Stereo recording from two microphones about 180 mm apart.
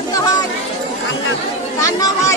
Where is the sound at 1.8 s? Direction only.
20° left (ahead or behind).